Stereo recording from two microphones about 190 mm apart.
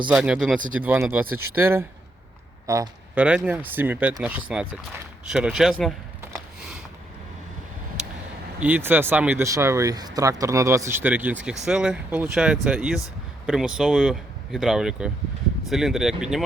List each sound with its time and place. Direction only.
0.1 s speech: 5° right (ahead or behind)
2.6 s a sound: 15° right (ahead or behind)
3.2 s speech: 5° right (ahead or behind)
8.6 s speech: 10° right (ahead or behind)